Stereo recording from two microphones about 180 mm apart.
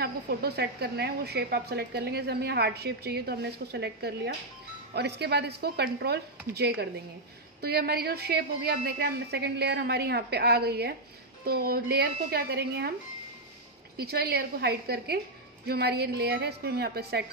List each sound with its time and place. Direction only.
0.0 s speech: 60° right (ahead or behind)
13.9 s speech: 60° right (ahead or behind)